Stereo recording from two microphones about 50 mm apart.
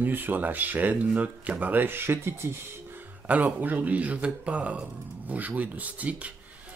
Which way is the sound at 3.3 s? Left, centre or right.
Right.